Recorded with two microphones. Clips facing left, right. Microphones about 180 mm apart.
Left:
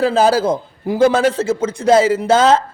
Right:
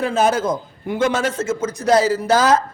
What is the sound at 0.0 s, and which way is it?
A man's voice, 35° left (ahead or behind).